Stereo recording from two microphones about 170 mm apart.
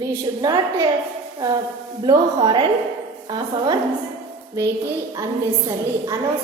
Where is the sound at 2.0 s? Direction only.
30° right (ahead or behind).